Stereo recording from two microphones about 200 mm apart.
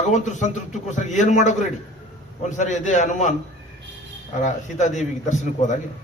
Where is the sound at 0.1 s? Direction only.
35° left (ahead or behind).